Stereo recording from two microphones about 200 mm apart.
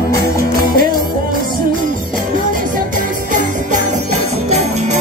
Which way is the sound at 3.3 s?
35° right (ahead or behind).